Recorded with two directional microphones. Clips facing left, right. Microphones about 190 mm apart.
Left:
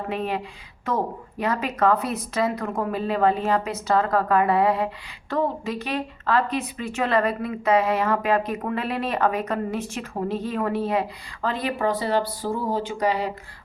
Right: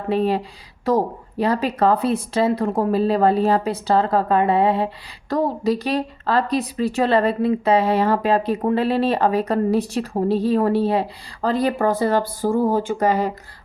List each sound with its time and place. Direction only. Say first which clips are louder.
0.1 s speech: right 10 dB; 35° right (ahead or behind)
5.3 s speech: right 5 dB; 40° right (ahead or behind)